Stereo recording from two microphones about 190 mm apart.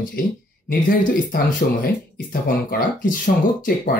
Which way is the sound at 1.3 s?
50° left (ahead or behind).